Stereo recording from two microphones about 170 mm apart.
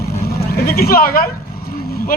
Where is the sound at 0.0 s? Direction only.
65° left (ahead or behind).